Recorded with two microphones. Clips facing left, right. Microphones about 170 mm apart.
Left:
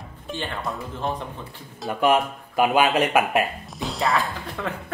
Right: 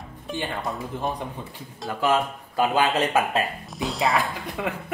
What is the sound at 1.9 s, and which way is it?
Speech, 20° left (ahead or behind).